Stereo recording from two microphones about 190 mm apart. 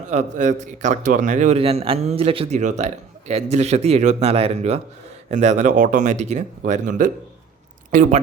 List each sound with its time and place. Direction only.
0.1 s a man's voice: 40° right (ahead or behind)